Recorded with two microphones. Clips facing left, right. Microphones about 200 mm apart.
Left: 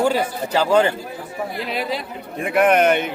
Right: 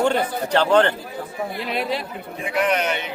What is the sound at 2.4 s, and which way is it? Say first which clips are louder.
Speech: left 6 dB; 55° left (ahead or behind).